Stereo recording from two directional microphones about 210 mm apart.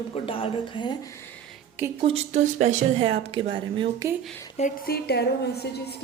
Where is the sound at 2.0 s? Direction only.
30° right (ahead or behind).